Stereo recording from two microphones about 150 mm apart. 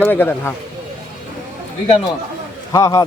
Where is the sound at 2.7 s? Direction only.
20° left (ahead or behind).